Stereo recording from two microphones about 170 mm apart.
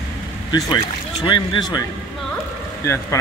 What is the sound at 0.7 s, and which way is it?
Speech, 25° left (ahead or behind).